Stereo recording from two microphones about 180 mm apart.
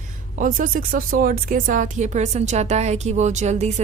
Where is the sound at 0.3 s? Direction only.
50° right (ahead or behind).